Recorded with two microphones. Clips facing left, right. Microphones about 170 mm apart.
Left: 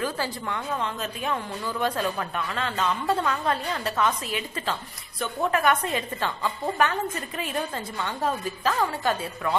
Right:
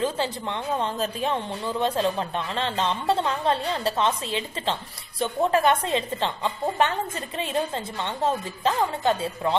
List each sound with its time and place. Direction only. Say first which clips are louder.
0.0 s speech: right 3 dB; 25° right (ahead or behind)